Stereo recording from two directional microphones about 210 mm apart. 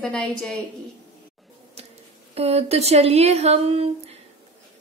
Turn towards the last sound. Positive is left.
turn(degrees=-30)  # may be behind; listen again after turning